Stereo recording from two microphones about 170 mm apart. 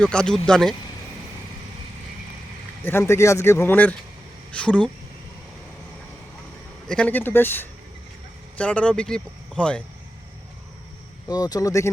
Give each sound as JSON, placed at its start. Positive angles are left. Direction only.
{"t": 0.0, "sound": "speech", "side_deg": 5}
{"t": 2.8, "sound": "speech", "side_deg": 15}
{"t": 6.8, "sound": "speech", "side_deg": 5}
{"t": 11.3, "sound": "speech", "side_deg": 25}